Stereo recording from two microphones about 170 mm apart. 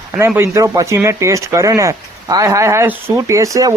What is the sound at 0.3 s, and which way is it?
Speech, 15° right (ahead or behind).